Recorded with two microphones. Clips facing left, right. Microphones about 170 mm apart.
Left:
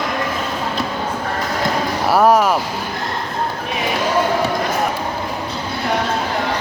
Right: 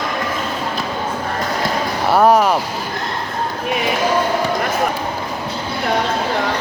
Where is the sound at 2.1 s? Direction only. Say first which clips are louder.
Right 1 dB; centre (ahead or behind).